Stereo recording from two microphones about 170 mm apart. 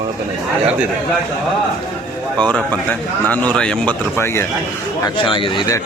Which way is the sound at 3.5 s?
5° left (ahead or behind).